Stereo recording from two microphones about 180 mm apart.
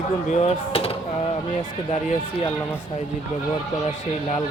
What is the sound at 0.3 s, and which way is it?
Speech, 35° left (ahead or behind).